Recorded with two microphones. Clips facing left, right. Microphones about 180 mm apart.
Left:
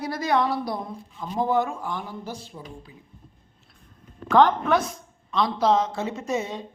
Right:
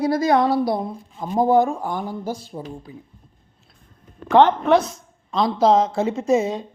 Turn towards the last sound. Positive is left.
turn(degrees=-30)  # may be behind; listen again after turning